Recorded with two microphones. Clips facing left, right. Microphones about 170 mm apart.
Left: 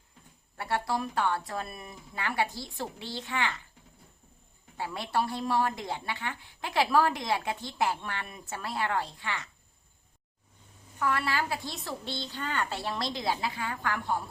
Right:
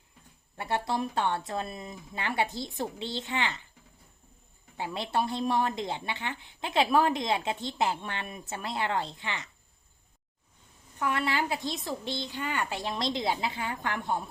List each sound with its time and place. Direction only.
0.5 s speech: 20° right (ahead or behind)
4.8 s speech: 20° right (ahead or behind)
11.0 s speech: 20° right (ahead or behind)